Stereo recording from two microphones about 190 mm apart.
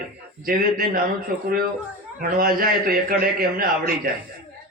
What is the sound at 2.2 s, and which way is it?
A man's voice, 50° right (ahead or behind).